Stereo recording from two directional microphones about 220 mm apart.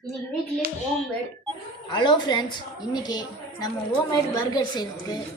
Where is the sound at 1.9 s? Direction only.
20° left (ahead or behind).